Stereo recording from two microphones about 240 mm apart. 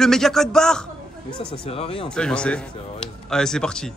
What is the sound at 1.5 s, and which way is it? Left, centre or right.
Speech, left.